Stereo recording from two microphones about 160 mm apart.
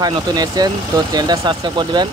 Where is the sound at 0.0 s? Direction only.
25° right (ahead or behind).